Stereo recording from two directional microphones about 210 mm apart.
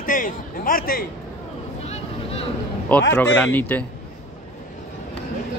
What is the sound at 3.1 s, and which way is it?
Speech, 10° left (ahead or behind).